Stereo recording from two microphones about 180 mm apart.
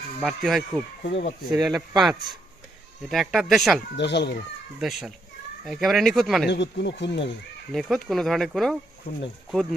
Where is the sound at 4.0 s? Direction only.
70° left (ahead or behind).